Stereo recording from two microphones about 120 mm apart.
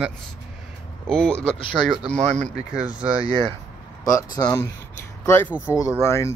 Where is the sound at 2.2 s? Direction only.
65° right (ahead or behind).